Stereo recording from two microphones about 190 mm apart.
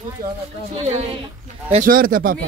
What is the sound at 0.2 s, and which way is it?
Speech, 50° right (ahead or behind).